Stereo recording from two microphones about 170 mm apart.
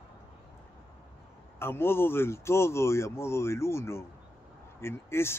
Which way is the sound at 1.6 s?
15° left (ahead or behind).